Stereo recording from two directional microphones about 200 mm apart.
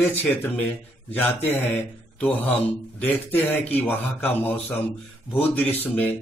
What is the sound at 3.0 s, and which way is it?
A man's voice, 10° left (ahead or behind).